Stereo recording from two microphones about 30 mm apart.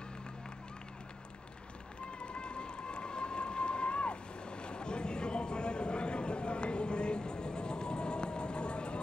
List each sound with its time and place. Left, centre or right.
2.0 s run: left